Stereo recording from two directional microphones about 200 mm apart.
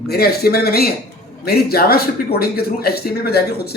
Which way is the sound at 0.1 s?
50° left (ahead or behind).